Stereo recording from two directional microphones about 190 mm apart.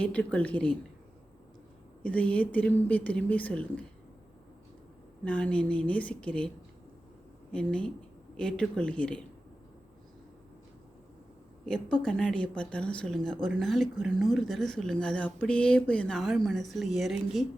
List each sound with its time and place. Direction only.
0.0 s speech: 5° left (ahead or behind)
2.0 s speech: 5° left (ahead or behind)
5.2 s speech: 5° left (ahead or behind)
7.5 s speech: 5° left (ahead or behind)
11.6 s speech: 5° left (ahead or behind)